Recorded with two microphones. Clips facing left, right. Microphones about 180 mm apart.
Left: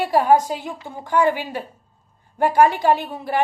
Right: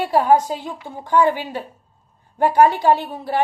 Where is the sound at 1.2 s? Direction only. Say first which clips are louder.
Even; 10° left (ahead or behind).